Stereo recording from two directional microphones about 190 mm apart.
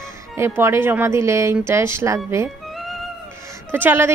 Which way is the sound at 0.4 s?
15° right (ahead or behind).